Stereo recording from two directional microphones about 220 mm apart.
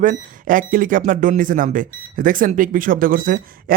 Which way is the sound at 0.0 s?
35° right (ahead or behind).